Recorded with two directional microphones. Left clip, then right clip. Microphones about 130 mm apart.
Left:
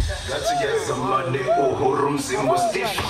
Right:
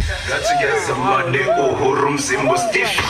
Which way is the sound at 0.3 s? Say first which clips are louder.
Right 5 dB; 20° right (ahead or behind).